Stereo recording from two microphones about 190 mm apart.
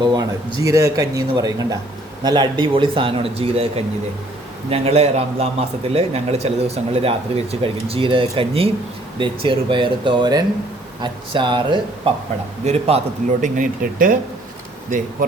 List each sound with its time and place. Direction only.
0.0 s a man's voice: 20° right (ahead or behind)
13.4 s speech: 45° right (ahead or behind)